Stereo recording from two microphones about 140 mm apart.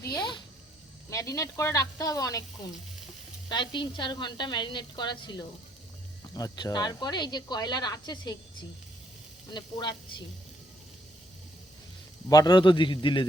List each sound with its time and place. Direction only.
0.0 s a sound: 20° left (ahead or behind)
1.1 s speech: 20° left (ahead or behind)
3.5 s a woman's voice: 35° left (ahead or behind)
9.5 s a woman's voice: 30° left (ahead or behind)
12.3 s a woman's voice: 25° left (ahead or behind)